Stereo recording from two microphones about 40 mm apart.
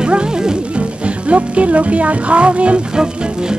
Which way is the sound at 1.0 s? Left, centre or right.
Right.